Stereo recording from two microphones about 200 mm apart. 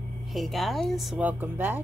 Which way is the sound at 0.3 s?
Centre (ahead or behind).